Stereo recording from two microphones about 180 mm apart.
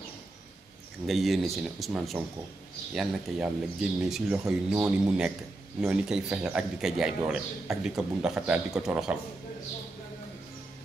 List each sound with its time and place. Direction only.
1.0 s a man's voice: centre (ahead or behind)